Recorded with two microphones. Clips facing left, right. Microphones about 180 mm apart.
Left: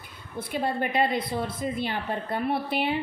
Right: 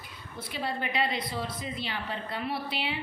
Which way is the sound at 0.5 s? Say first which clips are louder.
Left 6 dB; 50° left (ahead or behind).